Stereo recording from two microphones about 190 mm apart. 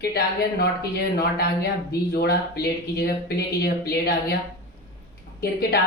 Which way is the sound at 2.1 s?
55° left (ahead or behind).